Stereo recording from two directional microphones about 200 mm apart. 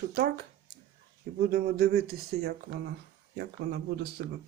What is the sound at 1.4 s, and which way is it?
Speech, 50° right (ahead or behind).